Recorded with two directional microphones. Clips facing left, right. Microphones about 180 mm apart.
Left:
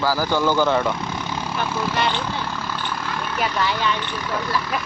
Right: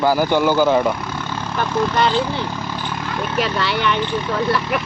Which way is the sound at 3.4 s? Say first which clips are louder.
Right 2 dB; 75° right (ahead or behind).